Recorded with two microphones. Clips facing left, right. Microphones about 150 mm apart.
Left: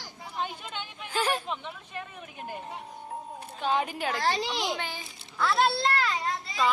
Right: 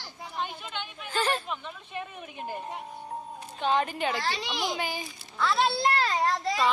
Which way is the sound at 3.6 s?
10° left (ahead or behind).